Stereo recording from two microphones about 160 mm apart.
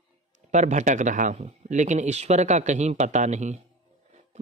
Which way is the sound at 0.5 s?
50° right (ahead or behind).